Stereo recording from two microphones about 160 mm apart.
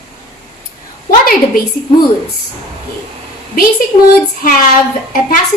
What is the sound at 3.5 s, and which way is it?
A woman's voice, 65° left (ahead or behind).